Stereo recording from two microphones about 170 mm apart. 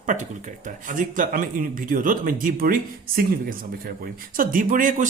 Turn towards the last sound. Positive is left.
turn(degrees=-50)  # may be behind; listen again after turning